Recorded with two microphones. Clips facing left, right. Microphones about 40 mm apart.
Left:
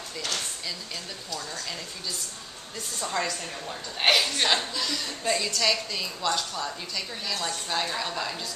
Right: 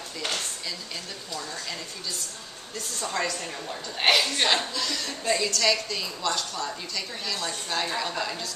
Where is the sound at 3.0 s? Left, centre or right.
Centre.